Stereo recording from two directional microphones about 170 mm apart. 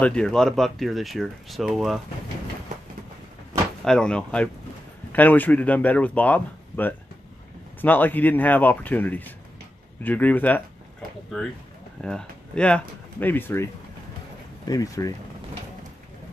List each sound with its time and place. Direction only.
0.0 s speech: 5° left (ahead or behind)
3.8 s speech: 5° left (ahead or behind)
12.0 s speech: 5° left (ahead or behind)
14.7 s speech: 20° left (ahead or behind)